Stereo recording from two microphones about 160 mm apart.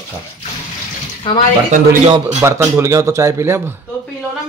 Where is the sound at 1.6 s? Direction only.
50° right (ahead or behind).